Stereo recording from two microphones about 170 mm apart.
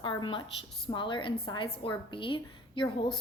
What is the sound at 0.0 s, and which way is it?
A woman's voice, 30° left (ahead or behind).